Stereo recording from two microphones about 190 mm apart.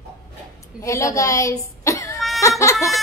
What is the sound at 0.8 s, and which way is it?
Speech, 15° left (ahead or behind).